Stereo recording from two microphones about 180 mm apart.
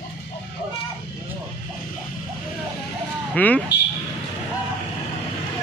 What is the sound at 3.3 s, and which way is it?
Speech, 10° left (ahead or behind).